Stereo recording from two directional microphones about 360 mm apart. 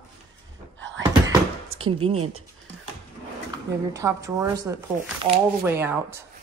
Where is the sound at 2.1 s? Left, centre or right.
Right.